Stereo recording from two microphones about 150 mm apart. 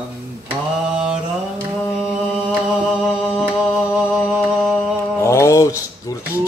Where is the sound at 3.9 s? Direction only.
5° right (ahead or behind).